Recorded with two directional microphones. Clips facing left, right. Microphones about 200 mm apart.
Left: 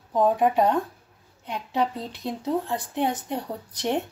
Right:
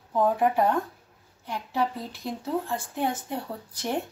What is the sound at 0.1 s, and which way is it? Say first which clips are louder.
Speech: left 2 dB; 20° left (ahead or behind).